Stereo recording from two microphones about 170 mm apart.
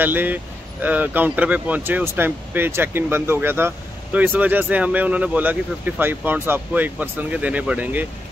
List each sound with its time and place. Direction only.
0.0 s speech: 10° right (ahead or behind)